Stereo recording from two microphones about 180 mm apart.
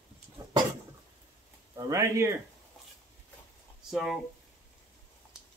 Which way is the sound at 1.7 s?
15° right (ahead or behind).